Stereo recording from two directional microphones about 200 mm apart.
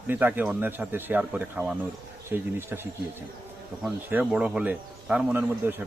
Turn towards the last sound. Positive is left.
turn(degrees=-10)  # may be behind; listen again after turning